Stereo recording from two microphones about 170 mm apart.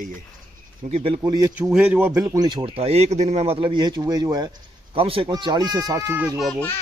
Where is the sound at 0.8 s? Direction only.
35° right (ahead or behind).